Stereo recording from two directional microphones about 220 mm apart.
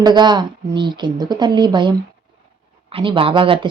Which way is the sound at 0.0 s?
20° right (ahead or behind).